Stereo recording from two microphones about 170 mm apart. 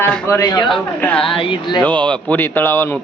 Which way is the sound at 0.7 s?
5° left (ahead or behind).